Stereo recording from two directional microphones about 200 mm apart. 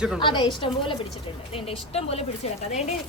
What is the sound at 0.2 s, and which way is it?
A woman's voice, 25° left (ahead or behind).